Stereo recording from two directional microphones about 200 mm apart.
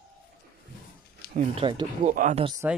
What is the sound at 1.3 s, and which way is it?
Speech, 30° right (ahead or behind).